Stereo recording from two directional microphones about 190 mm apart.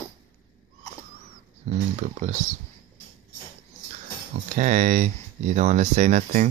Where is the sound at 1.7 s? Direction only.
35° right (ahead or behind).